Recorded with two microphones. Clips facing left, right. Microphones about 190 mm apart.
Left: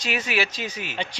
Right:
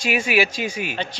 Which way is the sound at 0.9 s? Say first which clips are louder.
Right 2 dB; 15° left (ahead or behind).